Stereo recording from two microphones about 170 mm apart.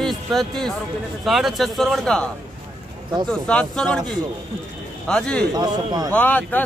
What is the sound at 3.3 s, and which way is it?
Speech, 5° left (ahead or behind).